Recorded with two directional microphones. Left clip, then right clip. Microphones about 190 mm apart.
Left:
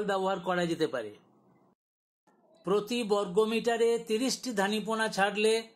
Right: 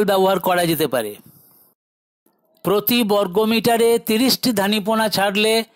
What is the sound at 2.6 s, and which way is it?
Speech, 50° right (ahead or behind).